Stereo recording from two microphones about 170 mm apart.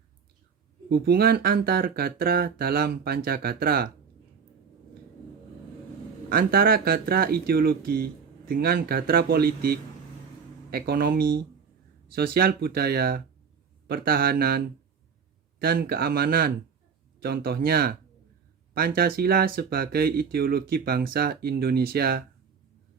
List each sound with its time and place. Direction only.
0.9 s speech: 65° right (ahead or behind)
6.2 s speech: 60° right (ahead or behind)